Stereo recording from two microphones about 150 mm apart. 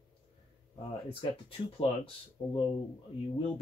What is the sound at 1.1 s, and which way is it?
Speech, 35° left (ahead or behind).